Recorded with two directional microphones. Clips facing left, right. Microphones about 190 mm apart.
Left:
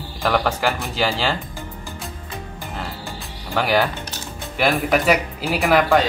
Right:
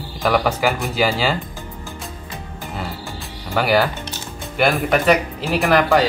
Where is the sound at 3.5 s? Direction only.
5° right (ahead or behind).